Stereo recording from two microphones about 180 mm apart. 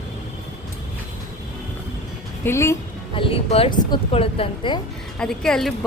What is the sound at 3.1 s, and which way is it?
Speech, 30° left (ahead or behind).